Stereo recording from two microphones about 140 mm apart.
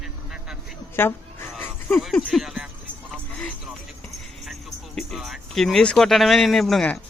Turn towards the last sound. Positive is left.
turn(degrees=5)  # may be behind; listen again after turning